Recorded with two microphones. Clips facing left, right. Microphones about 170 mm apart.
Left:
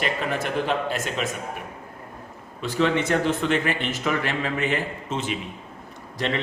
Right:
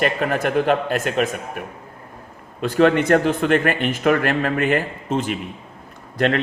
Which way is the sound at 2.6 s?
55° right (ahead or behind).